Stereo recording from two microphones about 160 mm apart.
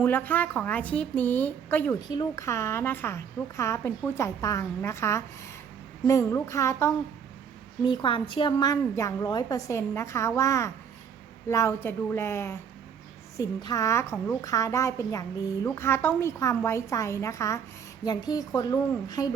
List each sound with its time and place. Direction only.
0.0 s a woman's voice: 10° left (ahead or behind)
7.9 s a woman's voice: 30° left (ahead or behind)